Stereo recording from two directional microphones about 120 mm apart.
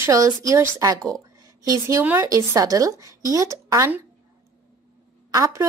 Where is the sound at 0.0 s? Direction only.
25° right (ahead or behind).